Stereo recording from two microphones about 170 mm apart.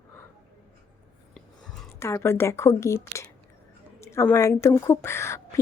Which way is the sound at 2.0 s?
15° left (ahead or behind).